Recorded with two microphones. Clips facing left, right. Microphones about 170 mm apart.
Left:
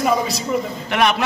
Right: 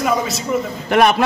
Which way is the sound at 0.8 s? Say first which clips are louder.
Right 6 dB; 40° right (ahead or behind).